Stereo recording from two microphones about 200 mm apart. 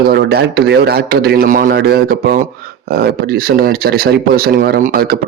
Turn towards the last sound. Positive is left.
turn(degrees=-45)  # may be behind; listen again after turning